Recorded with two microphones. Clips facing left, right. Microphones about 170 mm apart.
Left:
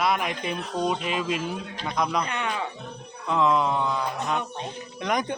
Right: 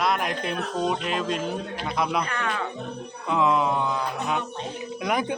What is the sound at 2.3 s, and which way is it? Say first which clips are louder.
Speech: even; 20° left (ahead or behind).